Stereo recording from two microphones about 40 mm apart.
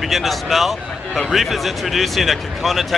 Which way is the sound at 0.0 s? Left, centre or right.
Centre.